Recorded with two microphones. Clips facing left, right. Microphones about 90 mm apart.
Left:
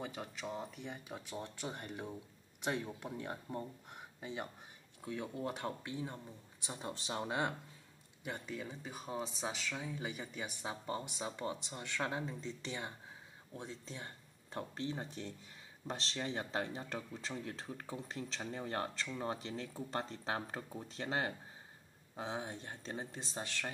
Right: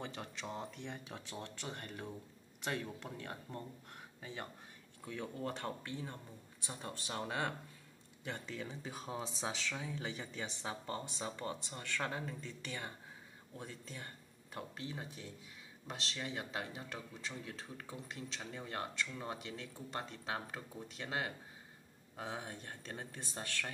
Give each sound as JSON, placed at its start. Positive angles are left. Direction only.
{"t": 0.0, "sound": "speech", "side_deg": 10}
{"t": 22.1, "sound": "speech", "side_deg": 20}